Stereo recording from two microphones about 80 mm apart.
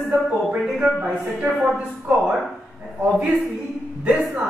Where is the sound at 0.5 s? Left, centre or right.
Centre.